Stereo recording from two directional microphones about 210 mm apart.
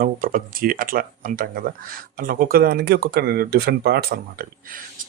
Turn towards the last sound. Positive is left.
turn(degrees=-50)  # may be behind; listen again after turning